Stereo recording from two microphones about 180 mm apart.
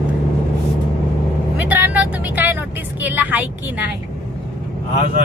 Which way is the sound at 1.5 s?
10° right (ahead or behind).